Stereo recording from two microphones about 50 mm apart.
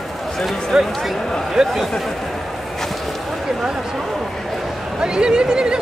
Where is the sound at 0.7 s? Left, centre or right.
Centre.